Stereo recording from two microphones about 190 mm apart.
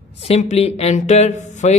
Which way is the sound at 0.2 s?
35° left (ahead or behind).